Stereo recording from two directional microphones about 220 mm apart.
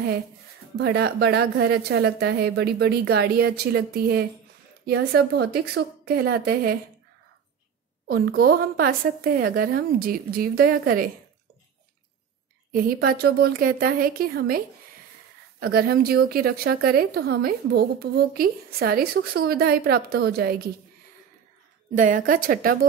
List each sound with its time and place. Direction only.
0.7 s a woman's voice: 50° right (ahead or behind)
8.1 s a woman's voice: 45° right (ahead or behind)
12.7 s a woman's voice: 40° right (ahead or behind)
15.6 s a woman's voice: 45° right (ahead or behind)
21.9 s a woman's voice: 35° right (ahead or behind)